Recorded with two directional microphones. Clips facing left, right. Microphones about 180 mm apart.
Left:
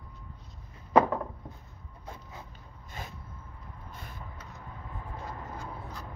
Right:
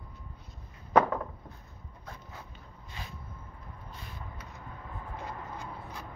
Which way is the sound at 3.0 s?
45° left (ahead or behind).